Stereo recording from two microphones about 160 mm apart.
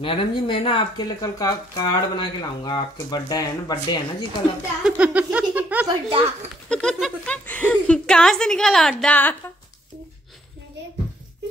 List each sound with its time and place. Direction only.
0.0 s speech: 35° left (ahead or behind)
1.2 s speech: 20° left (ahead or behind)
4.8 s a sound: 5° right (ahead or behind)
5.9 s a child's voice: 30° right (ahead or behind)
6.7 s a woman's voice: 5° left (ahead or behind)